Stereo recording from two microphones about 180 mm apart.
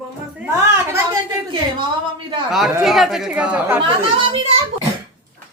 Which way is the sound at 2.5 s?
Centre (ahead or behind).